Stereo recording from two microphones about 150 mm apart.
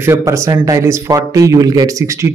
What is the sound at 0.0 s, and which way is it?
A man's voice, 20° right (ahead or behind).